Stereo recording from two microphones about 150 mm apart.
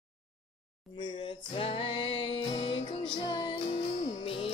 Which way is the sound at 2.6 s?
45° left (ahead or behind).